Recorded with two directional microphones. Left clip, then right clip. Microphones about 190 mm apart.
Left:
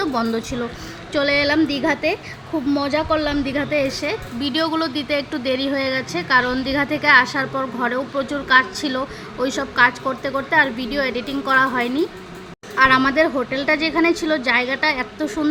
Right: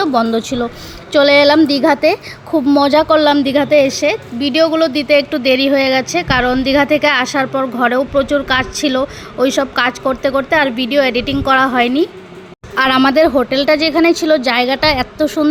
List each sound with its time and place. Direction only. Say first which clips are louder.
0.0 s a woman's voice: right 8 dB; 20° right (ahead or behind)